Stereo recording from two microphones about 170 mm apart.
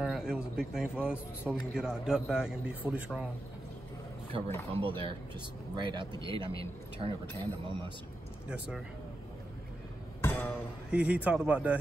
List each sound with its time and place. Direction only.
0.0 s speech: 5° right (ahead or behind)
4.7 s speech: 30° right (ahead or behind)
8.5 s speech: 5° right (ahead or behind)
10.2 s a sound: 10° left (ahead or behind)
10.9 s a man's voice: 5° right (ahead or behind)